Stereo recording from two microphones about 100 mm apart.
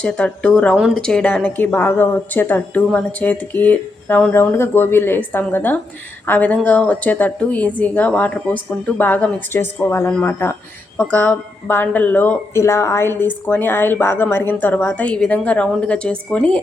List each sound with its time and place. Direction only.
0.0 s a woman's voice: 10° left (ahead or behind)
12.5 s a woman's voice: 25° left (ahead or behind); by 16.6 s 10° left (ahead or behind)